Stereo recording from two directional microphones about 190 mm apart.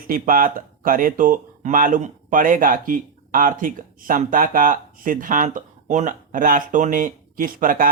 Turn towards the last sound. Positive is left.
turn(degrees=-45)  # may be behind; listen again after turning